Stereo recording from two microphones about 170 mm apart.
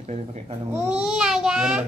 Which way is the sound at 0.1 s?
40° right (ahead or behind).